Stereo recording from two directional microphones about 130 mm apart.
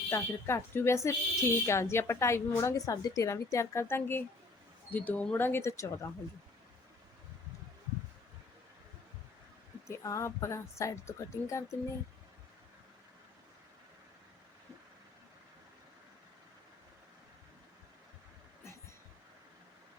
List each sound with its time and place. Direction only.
0.1 s speech: 20° left (ahead or behind)
9.8 s speech: 25° left (ahead or behind)